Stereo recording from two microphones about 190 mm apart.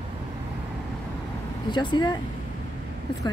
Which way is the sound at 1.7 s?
25° left (ahead or behind).